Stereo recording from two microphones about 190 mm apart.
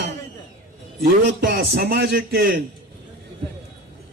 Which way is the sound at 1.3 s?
60° right (ahead or behind).